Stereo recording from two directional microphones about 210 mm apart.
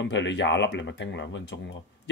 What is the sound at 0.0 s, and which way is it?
Speech, 60° left (ahead or behind).